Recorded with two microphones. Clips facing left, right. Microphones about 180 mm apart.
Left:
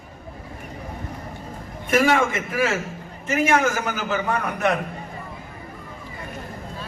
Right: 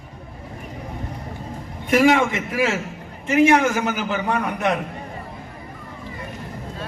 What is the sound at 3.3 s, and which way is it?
A man's voice, 20° right (ahead or behind).